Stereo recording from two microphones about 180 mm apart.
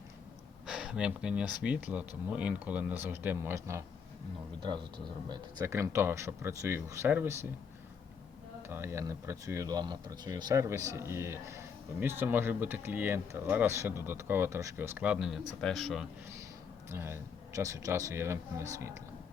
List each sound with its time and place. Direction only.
0.7 s speech: 5° right (ahead or behind)
8.6 s speech: 15° right (ahead or behind)
16.9 s speech: 15° right (ahead or behind)